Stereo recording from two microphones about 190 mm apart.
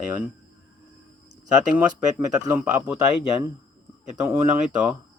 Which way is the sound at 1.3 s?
20° right (ahead or behind).